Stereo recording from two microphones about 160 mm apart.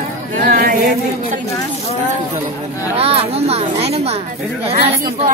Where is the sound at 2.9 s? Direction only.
35° right (ahead or behind).